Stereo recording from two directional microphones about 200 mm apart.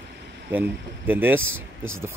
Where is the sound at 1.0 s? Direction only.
10° right (ahead or behind).